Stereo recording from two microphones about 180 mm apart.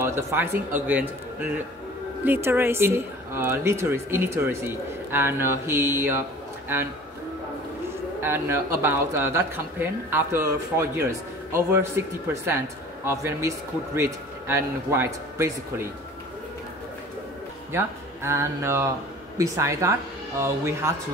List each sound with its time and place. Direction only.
0.0 s speech: 15° right (ahead or behind)
8.2 s speech: 15° right (ahead or behind)
17.7 s speech: 15° right (ahead or behind)